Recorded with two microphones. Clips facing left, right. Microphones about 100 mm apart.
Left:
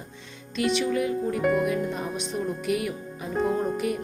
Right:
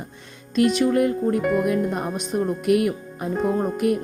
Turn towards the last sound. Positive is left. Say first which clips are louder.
# right 6 dB
turn(degrees=-55)  # may be behind; listen again after turning